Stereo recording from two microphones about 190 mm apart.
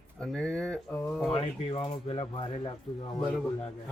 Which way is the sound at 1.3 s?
30° left (ahead or behind).